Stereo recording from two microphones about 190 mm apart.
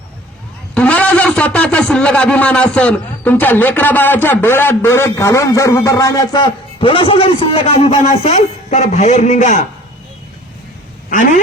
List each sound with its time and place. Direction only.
0.7 s speech: 5° left (ahead or behind); by 9.6 s 40° left (ahead or behind)
11.1 s speech: 45° left (ahead or behind)